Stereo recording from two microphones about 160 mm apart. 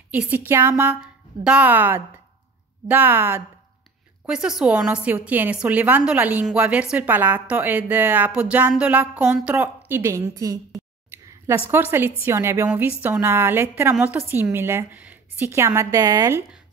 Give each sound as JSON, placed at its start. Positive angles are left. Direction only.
{"t": 0.1, "sound": "a woman's voice", "side_deg": -10}
{"t": 11.1, "sound": "a sound", "side_deg": -15}
{"t": 11.7, "sound": "a woman's voice", "side_deg": -15}